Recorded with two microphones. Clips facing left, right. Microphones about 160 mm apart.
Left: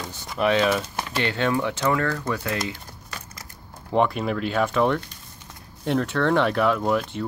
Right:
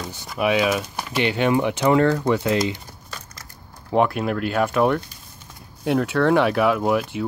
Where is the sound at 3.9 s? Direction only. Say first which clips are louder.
Right 2 dB; 5° right (ahead or behind).